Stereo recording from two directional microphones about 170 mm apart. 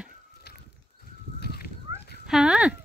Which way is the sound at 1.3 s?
65° left (ahead or behind).